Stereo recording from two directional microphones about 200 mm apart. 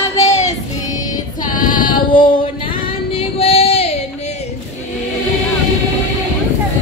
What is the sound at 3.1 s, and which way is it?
Yodeling, 30° left (ahead or behind).